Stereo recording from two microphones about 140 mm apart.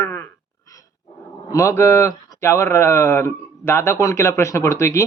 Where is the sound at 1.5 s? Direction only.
20° left (ahead or behind).